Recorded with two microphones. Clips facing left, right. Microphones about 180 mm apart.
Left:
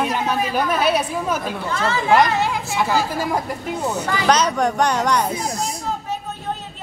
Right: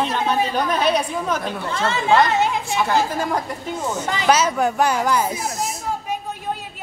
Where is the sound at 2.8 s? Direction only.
10° left (ahead or behind).